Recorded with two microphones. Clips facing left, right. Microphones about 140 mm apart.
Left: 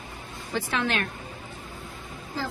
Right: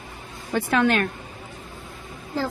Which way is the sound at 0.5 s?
50° right (ahead or behind).